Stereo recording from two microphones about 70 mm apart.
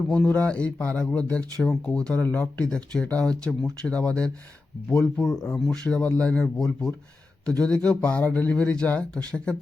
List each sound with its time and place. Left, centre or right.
0.3 s speech: centre